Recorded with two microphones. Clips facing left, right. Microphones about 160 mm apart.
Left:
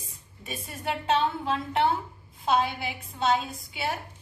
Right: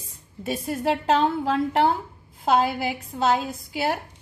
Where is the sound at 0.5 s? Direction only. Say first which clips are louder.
Right 9 dB; 85° right.